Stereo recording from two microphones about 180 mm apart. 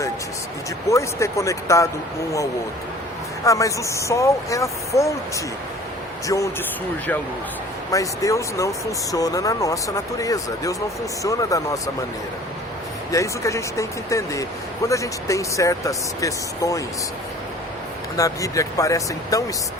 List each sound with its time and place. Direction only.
0.9 s speech: 15° left (ahead or behind)
3.4 s speech: 15° left (ahead or behind)
6.2 s speech: 15° left (ahead or behind)
7.9 s speech: 20° left (ahead or behind)
13.1 s speech: 15° left (ahead or behind)
18.2 s speech: 20° left (ahead or behind)